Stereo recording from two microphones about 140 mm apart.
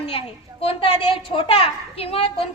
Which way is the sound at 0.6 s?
40° left (ahead or behind).